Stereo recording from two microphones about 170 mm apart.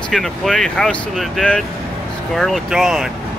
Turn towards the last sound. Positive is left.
turn(degrees=0)  # may be behind; listen again after turning